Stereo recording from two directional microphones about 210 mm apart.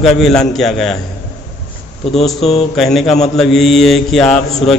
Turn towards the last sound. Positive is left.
turn(degrees=0)  # may be behind; listen again after turning